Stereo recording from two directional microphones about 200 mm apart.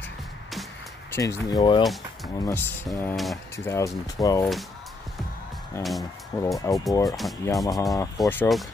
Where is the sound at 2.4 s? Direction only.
10° left (ahead or behind).